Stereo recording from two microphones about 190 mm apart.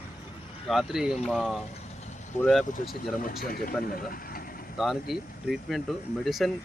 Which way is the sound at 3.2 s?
50° left (ahead or behind).